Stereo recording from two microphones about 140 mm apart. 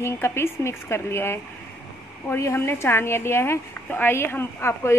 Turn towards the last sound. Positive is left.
turn(degrees=20)  # may be behind; listen again after turning